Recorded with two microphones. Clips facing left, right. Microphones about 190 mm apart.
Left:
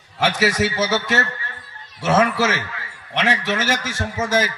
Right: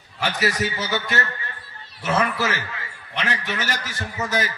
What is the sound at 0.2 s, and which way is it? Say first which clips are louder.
A man's voice: left 5 dB; 85° left.